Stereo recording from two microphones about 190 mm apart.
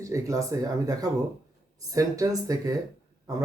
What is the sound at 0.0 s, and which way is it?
Speech, 15° right (ahead or behind).